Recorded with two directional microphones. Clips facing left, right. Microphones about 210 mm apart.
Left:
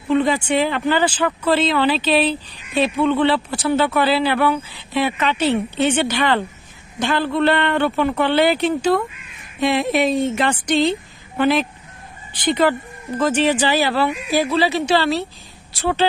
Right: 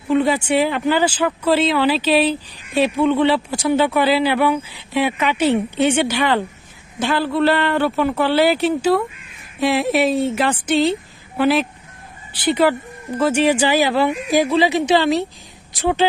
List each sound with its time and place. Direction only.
0.1 s speech: 5° right (ahead or behind)